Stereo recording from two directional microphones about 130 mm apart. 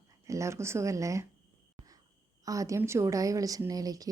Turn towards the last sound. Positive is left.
turn(degrees=-30)  # may be behind; listen again after turning